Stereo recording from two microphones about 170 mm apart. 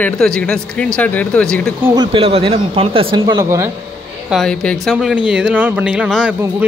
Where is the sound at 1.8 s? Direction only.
25° right (ahead or behind).